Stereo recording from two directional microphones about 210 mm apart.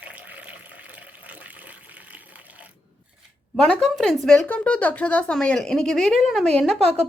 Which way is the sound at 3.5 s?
5° left (ahead or behind).